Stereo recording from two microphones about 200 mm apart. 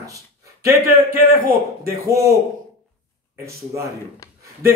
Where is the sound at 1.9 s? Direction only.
15° right (ahead or behind).